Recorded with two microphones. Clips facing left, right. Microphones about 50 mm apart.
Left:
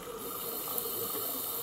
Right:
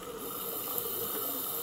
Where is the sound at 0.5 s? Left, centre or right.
Right.